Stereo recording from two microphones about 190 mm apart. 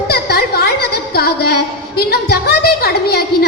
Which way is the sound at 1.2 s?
55° left (ahead or behind).